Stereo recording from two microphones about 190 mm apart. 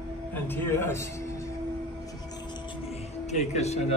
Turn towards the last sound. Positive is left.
turn(degrees=35)  # may be behind; listen again after turning